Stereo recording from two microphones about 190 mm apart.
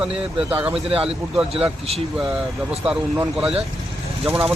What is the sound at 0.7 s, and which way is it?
A man's voice, 30° right (ahead or behind).